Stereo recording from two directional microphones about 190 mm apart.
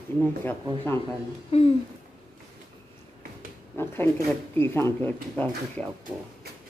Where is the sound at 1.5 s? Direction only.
30° left (ahead or behind).